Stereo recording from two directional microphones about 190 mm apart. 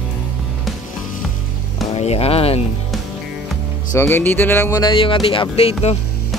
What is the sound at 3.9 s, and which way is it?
Speech, 10° left (ahead or behind).